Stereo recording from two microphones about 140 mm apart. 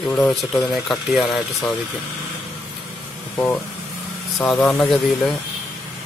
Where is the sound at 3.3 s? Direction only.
15° left (ahead or behind).